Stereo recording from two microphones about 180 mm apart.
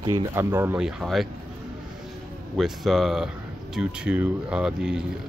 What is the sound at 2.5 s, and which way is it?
Speech, centre (ahead or behind).